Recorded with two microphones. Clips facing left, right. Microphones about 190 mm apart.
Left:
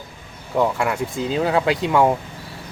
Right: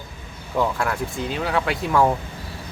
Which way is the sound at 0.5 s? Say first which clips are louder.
Left 3 dB; 10° left (ahead or behind).